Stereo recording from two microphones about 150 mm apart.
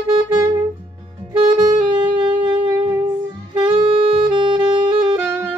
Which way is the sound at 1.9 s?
30° right (ahead or behind).